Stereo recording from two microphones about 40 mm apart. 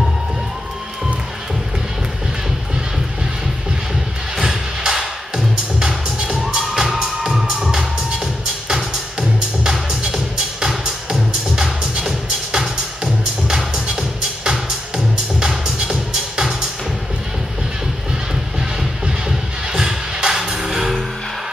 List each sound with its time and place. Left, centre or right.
4.4 s music: centre
5.8 s music: right
8.6 s music: right
10.7 s music: centre
11.5 s music: right
15.3 s music: centre
18.3 s music: centre